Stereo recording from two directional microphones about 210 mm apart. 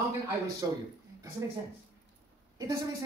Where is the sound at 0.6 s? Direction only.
15° right (ahead or behind).